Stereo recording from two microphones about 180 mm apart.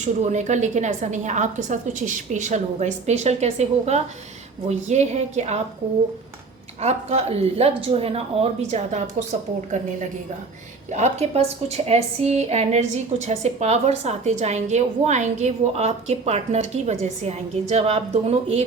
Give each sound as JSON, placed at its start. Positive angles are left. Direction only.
{"t": 0.0, "sound": "a woman's voice", "side_deg": -40}
{"t": 6.8, "sound": "a woman's voice", "side_deg": -35}
{"t": 10.9, "sound": "a woman's voice", "side_deg": -40}